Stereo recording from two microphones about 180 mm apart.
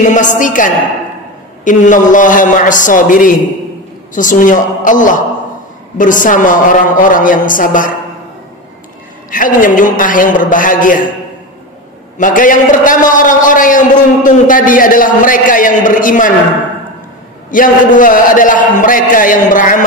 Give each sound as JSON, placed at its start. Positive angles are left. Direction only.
{"t": 0.1, "sound": "a man's voice", "side_deg": 45}
{"t": 9.3, "sound": "a man's voice", "side_deg": 50}
{"t": 12.2, "sound": "a man's voice", "side_deg": 45}
{"t": 17.5, "sound": "a man's voice", "side_deg": 50}